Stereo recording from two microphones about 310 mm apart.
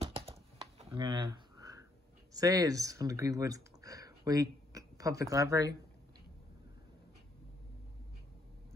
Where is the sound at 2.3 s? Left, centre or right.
Centre.